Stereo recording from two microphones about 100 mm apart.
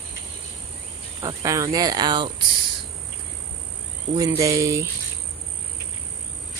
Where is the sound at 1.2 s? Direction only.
35° right (ahead or behind); by 2.4 s 50° right (ahead or behind).